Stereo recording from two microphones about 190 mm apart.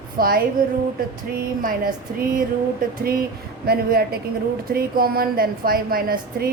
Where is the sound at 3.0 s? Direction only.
50° right (ahead or behind).